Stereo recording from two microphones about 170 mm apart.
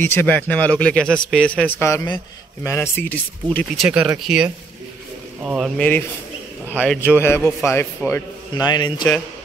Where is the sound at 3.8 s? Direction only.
5° right (ahead or behind).